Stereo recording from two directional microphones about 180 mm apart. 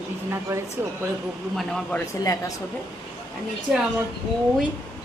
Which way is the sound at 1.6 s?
5° left (ahead or behind).